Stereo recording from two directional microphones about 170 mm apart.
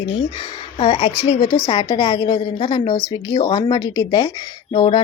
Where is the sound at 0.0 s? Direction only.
30° left (ahead or behind).